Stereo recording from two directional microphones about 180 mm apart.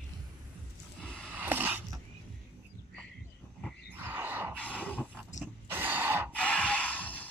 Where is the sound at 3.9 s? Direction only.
10° right (ahead or behind).